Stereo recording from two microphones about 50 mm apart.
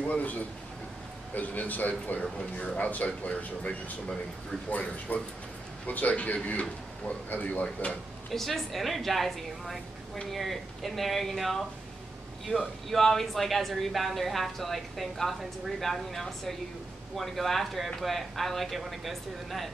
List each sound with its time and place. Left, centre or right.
0.0 s a man's voice: left
8.3 s speech: centre